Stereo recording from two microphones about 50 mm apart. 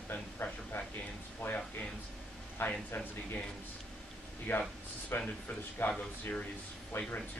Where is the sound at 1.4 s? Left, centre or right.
Left.